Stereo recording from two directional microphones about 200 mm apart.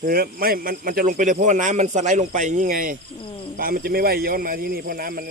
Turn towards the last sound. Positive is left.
turn(degrees=-45)  # may be behind; listen again after turning